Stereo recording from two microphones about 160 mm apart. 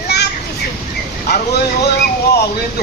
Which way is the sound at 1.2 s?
75° left (ahead or behind).